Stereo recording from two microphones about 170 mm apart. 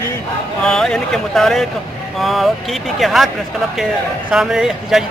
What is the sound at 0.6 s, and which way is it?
A man's voice, 5° left (ahead or behind).